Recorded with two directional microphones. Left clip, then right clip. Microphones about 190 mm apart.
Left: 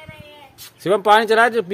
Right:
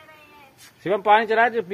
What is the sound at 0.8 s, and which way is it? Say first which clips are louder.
Speech: left 4 dB; 15° left (ahead or behind).